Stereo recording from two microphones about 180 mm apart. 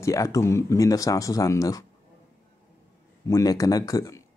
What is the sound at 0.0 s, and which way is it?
Speech, 15° left (ahead or behind).